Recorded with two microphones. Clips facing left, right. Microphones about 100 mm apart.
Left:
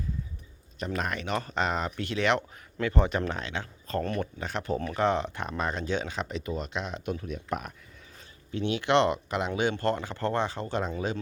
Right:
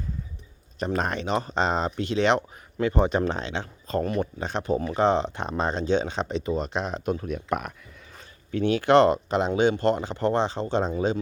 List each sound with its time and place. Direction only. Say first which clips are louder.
0.9 s speech: right 5 dB; 30° right (ahead or behind)
7.3 s speech: right 5 dB; 70° right (ahead or behind)
8.5 s speech: right 6 dB; 45° right (ahead or behind)
9.5 s speech: right 5 dB; 20° right (ahead or behind)